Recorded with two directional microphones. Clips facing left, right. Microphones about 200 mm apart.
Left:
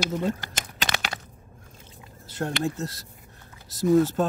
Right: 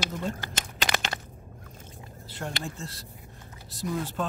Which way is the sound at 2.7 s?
40° left (ahead or behind).